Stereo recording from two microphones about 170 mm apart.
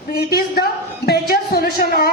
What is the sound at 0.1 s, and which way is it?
A man's voice, 65° left (ahead or behind).